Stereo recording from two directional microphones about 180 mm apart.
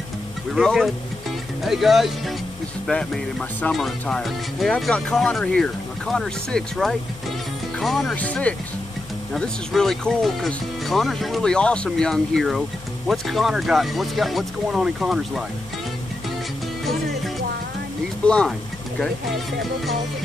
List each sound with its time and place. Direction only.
0.5 s speech: centre (ahead or behind)
18.2 s speech: 5° left (ahead or behind)